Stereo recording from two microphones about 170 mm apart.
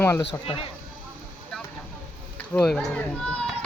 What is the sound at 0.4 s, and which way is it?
Speech, 30° left (ahead or behind).